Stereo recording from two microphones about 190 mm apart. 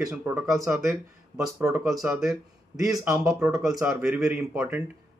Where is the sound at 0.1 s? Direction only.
10° right (ahead or behind).